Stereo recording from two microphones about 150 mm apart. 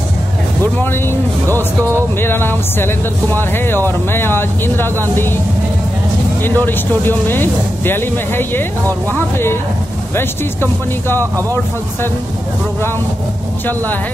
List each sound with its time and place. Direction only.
0.7 s speech: 15° left (ahead or behind)
6.4 s speech: 15° left (ahead or behind)